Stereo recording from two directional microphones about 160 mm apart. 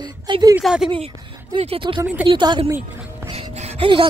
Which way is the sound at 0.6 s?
Centre (ahead or behind).